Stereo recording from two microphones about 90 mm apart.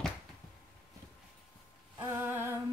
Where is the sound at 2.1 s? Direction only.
25° right (ahead or behind).